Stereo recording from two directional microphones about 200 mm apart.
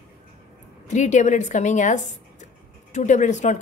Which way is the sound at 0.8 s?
35° left (ahead or behind).